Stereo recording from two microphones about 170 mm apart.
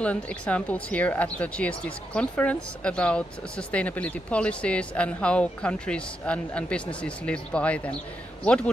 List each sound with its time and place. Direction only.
0.0 s speech: 5° left (ahead or behind)